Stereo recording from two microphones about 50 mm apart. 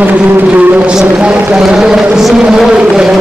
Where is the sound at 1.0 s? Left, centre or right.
Right.